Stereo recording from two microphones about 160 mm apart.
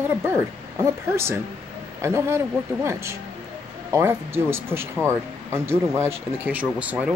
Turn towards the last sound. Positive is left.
turn(degrees=-10)  # may be behind; listen again after turning